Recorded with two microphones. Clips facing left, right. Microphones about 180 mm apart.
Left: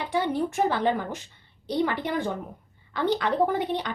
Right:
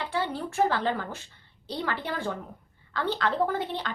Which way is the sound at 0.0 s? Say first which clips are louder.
Left 5 dB; 15° left (ahead or behind).